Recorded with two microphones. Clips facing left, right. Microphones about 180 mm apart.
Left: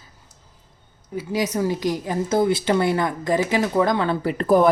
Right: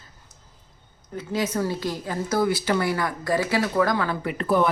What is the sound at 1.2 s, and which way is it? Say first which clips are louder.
A woman's voice: left 3 dB; 15° left (ahead or behind).